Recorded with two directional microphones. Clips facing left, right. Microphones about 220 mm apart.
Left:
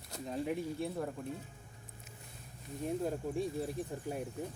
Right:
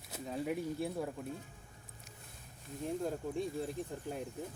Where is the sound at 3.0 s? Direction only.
5° left (ahead or behind).